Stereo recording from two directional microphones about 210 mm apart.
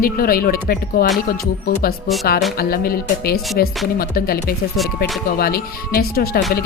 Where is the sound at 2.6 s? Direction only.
45° left (ahead or behind).